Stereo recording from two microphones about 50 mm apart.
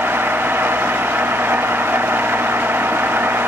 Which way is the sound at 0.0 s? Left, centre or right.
Right.